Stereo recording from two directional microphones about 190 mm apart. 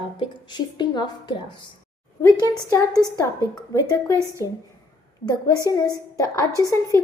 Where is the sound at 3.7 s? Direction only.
20° left (ahead or behind).